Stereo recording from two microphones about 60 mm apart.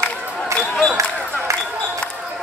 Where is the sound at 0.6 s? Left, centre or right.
Centre.